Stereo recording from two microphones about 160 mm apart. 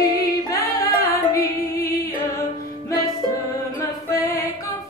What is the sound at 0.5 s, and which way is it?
Female singing, 20° left (ahead or behind).